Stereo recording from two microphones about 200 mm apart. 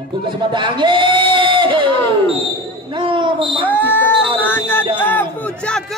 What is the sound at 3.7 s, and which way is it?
A man's voice, 10° left (ahead or behind).